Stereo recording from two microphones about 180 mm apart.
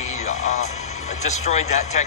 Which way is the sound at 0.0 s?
40° left (ahead or behind).